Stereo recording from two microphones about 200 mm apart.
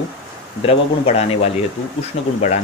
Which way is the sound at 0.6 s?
30° left (ahead or behind).